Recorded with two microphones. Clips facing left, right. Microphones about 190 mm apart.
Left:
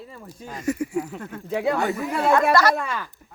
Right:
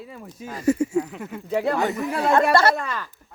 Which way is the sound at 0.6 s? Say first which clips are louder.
Right 5 dB; 30° right (ahead or behind).